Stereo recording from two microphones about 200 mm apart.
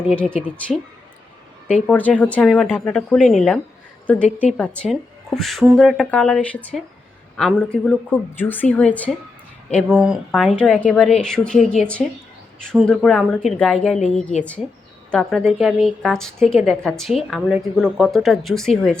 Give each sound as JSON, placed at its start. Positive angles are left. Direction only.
{"t": 0.1, "sound": "a woman's voice", "side_deg": 5}
{"t": 1.9, "sound": "a woman's voice", "side_deg": 5}
{"t": 13.9, "sound": "a woman's voice", "side_deg": 35}
{"t": 15.1, "sound": "a woman's voice", "side_deg": 5}